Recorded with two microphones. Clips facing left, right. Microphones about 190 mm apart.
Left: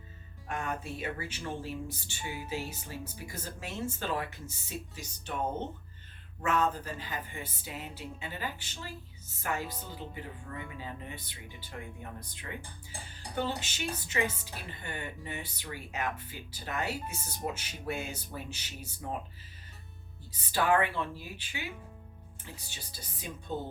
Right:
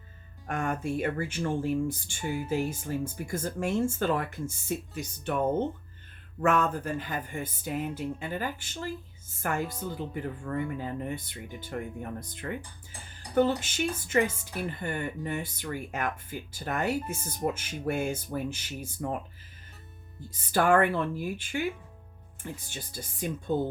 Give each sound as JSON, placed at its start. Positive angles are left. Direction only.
{"t": 0.4, "sound": "speech", "side_deg": -50}
{"t": 20.3, "sound": "speech", "side_deg": -50}